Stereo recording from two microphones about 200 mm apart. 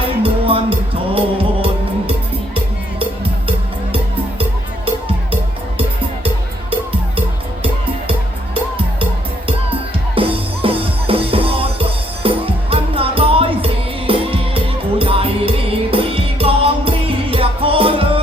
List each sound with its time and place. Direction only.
0.2 s music: 30° right (ahead or behind)
4.9 s music: 25° right (ahead or behind)
10.2 s music: 25° right (ahead or behind)